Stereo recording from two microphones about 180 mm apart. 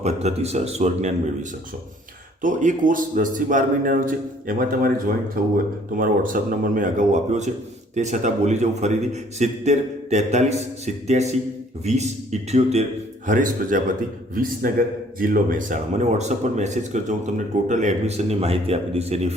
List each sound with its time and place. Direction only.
0.0 s a man's voice: 35° right (ahead or behind)
13.2 s a man's voice: 45° right (ahead or behind)